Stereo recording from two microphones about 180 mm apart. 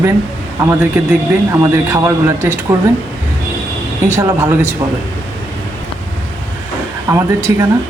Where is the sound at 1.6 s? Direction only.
15° right (ahead or behind).